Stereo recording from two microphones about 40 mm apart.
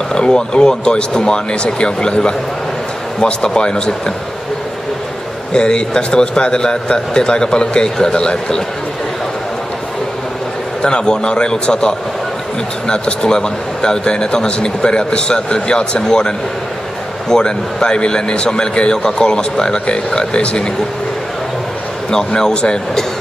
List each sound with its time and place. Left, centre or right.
0.1 s a man's voice: centre
5.5 s a man's voice: left
10.8 s a man's voice: left
22.1 s a man's voice: left